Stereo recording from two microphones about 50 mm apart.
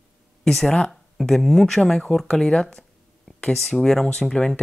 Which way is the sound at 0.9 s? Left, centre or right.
Centre.